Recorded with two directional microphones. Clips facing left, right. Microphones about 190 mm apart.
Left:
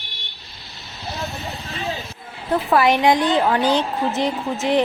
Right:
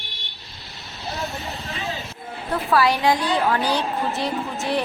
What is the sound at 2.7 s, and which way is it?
A woman's voice, 20° left (ahead or behind).